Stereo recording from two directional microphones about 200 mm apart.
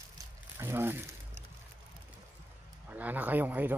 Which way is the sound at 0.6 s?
10° right (ahead or behind).